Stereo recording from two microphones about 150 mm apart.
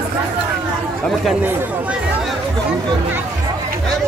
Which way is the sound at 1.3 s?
10° right (ahead or behind).